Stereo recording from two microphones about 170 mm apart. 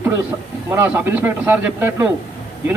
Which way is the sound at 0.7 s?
10° right (ahead or behind).